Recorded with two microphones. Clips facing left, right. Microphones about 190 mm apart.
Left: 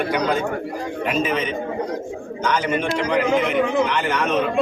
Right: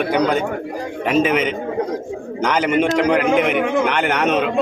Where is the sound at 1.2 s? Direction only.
90° right.